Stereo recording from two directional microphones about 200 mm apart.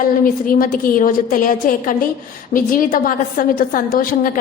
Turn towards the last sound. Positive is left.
turn(degrees=45)  # may be behind; listen again after turning